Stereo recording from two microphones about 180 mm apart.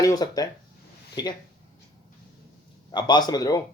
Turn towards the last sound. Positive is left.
turn(degrees=20)  # may be behind; listen again after turning